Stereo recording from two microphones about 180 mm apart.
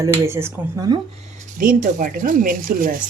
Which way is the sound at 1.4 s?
50° right (ahead or behind).